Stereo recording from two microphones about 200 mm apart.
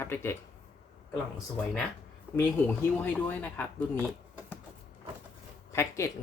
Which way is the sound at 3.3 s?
10° left (ahead or behind).